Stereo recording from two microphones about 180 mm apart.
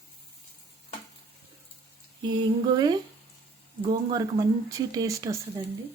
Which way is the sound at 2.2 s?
25° right (ahead or behind).